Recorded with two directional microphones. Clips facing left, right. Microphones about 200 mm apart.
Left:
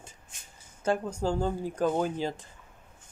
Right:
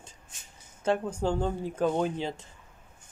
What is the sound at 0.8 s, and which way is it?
Speech, 5° right (ahead or behind).